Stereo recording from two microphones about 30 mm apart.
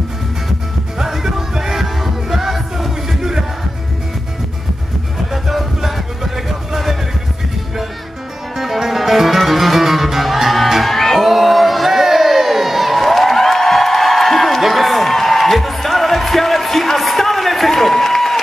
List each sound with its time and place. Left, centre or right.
0.9 s music: centre
3.2 s music: centre
5.3 s music: centre
8.5 s music: centre
11.1 s crowd: centre
14.6 s music: centre